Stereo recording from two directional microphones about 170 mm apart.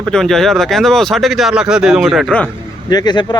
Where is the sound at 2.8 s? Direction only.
25° left (ahead or behind).